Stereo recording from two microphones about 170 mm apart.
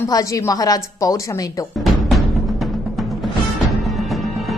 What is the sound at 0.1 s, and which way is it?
A woman's voice, 20° left (ahead or behind).